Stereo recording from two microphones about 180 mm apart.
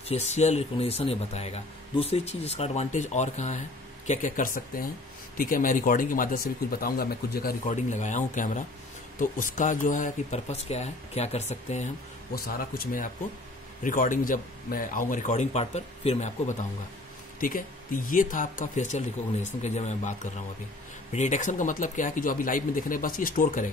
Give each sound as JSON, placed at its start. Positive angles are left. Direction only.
{"t": 0.1, "sound": "speech", "side_deg": 40}
{"t": 7.7, "sound": "speech", "side_deg": 40}
{"t": 12.4, "sound": "speech", "side_deg": 55}
{"t": 17.4, "sound": "speech", "side_deg": 50}